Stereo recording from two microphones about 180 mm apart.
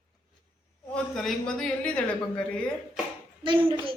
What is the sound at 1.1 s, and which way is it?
Speech, 5° left (ahead or behind).